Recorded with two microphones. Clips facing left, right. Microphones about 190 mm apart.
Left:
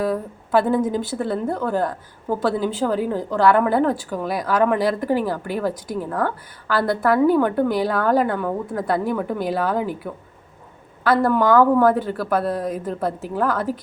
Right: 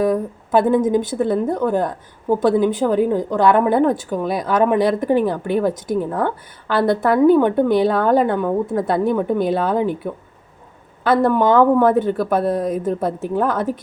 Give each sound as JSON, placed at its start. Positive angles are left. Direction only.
{"t": 0.0, "sound": "a woman's voice", "side_deg": -20}